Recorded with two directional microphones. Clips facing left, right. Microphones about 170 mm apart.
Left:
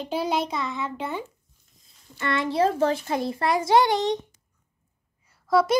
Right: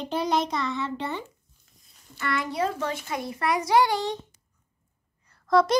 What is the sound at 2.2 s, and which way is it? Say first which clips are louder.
A child's voice: left 4 dB; 25° left (ahead or behind).